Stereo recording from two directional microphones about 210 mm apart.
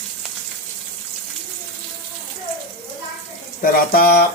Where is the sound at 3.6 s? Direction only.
40° left (ahead or behind).